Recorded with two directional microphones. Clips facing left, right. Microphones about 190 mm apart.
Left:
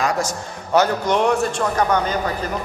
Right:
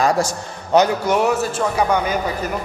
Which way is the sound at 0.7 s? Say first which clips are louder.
Right 2 dB; 10° right (ahead or behind).